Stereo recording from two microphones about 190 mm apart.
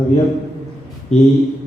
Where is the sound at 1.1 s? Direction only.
35° left (ahead or behind).